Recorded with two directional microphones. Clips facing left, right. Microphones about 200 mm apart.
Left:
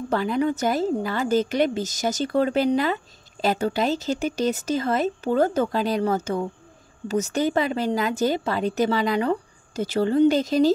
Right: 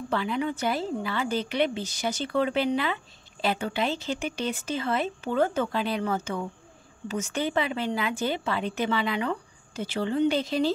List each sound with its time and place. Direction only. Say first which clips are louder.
0.1 s speech: left 5 dB; 40° left (ahead or behind)